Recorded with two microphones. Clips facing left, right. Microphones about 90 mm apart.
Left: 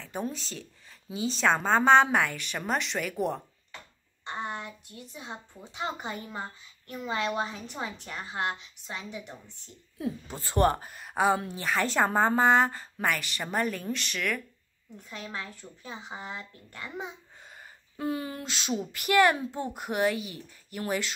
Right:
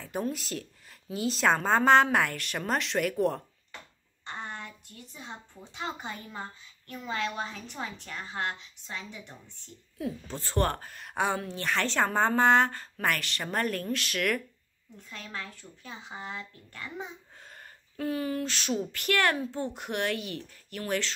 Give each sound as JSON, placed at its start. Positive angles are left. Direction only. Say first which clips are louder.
{"t": 0.1, "sound": "a woman's voice", "louder": "right 2 dB", "side_deg": -5}
{"t": 4.3, "sound": "speech", "louder": "left 4 dB", "side_deg": 15}
{"t": 10.2, "sound": "a woman's voice", "louder": "left 5 dB", "side_deg": 15}
{"t": 15.0, "sound": "speech", "louder": "left 2 dB", "side_deg": 15}
{"t": 17.9, "sound": "speech", "louder": "right 2 dB", "side_deg": 25}
{"t": 19.8, "sound": "speech", "louder": "left 6 dB", "side_deg": 5}